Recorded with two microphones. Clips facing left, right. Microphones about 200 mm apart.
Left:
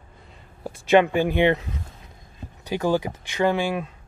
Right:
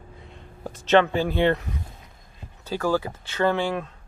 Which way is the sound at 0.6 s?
10° left (ahead or behind).